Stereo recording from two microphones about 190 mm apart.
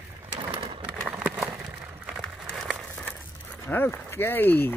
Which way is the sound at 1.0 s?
5° right (ahead or behind).